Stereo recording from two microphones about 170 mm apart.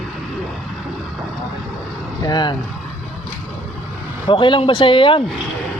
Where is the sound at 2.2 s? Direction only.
25° left (ahead or behind).